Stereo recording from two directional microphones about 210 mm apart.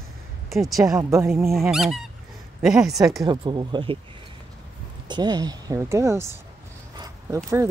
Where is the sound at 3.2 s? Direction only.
20° right (ahead or behind).